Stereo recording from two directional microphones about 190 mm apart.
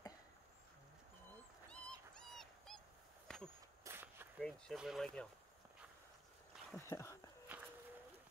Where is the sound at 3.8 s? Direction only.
10° right (ahead or behind).